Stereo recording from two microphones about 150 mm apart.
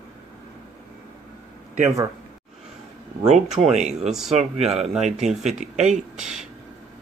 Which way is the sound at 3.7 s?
50° right (ahead or behind).